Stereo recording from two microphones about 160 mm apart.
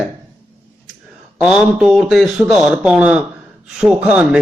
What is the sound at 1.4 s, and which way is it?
A man's voice, 5° right (ahead or behind).